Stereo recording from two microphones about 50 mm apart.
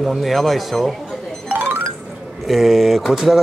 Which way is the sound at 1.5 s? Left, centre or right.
Right.